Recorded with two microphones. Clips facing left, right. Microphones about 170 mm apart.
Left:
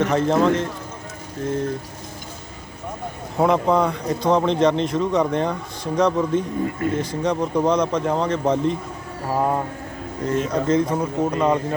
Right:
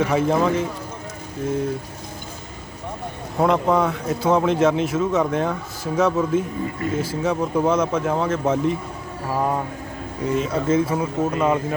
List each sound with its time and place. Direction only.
0.0 s speech: 10° right (ahead or behind)
3.3 s speech: centre (ahead or behind)
9.3 s speech: 15° left (ahead or behind)
10.2 s speech: 10° right (ahead or behind)